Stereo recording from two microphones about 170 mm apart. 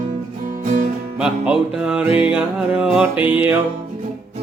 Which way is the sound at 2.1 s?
30° left (ahead or behind).